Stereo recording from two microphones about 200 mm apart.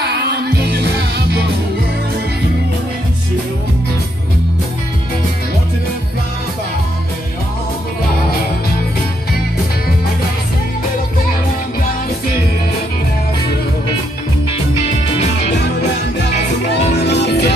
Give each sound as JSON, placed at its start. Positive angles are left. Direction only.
{"t": 0.0, "sound": "music", "side_deg": -55}
{"t": 15.5, "sound": "music", "side_deg": 55}
{"t": 16.3, "sound": "music", "side_deg": 30}
{"t": 17.0, "sound": "music", "side_deg": 55}